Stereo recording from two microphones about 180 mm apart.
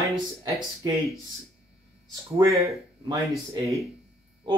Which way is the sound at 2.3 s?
15° right (ahead or behind).